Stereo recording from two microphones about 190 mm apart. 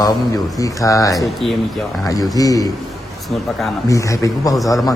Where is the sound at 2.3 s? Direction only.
20° left (ahead or behind).